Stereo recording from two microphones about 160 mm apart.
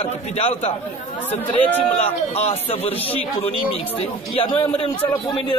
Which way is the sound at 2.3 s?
40° left (ahead or behind).